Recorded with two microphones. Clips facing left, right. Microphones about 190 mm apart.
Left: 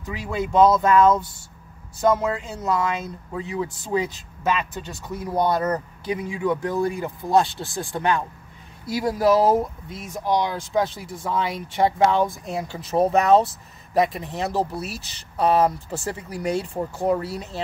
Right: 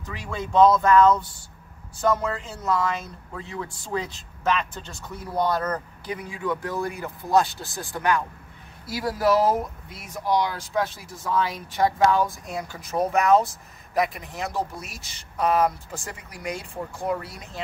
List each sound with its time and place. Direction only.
0.1 s speech: 10° left (ahead or behind); by 17.6 s 30° left (ahead or behind)